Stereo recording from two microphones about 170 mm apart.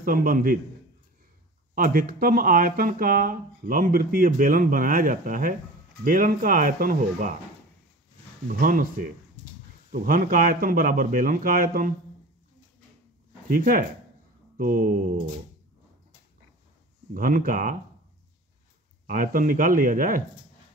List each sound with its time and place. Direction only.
0.0 s speech: 55° right (ahead or behind)
1.8 s speech: 55° right (ahead or behind)
8.5 s speech: 55° right (ahead or behind)
9.8 s speech: 55° right (ahead or behind)
13.5 s speech: 55° right (ahead or behind)
17.1 s speech: 55° right (ahead or behind)
19.0 s speech: 55° right (ahead or behind)